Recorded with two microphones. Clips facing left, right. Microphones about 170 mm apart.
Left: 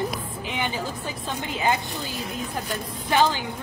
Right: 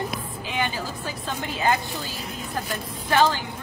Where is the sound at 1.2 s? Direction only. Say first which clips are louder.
Even; 15° left (ahead or behind).